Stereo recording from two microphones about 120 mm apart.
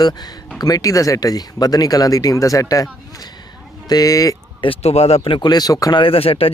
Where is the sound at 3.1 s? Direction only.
35° left (ahead or behind).